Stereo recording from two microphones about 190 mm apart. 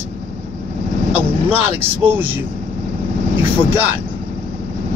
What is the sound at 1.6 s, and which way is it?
Speech, 10° right (ahead or behind).